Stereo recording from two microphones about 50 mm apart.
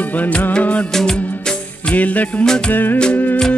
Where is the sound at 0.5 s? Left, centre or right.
Left.